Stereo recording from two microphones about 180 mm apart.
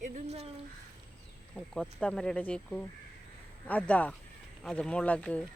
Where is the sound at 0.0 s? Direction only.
40° right (ahead or behind).